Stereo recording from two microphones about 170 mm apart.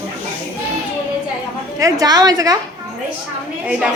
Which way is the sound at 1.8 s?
20° right (ahead or behind).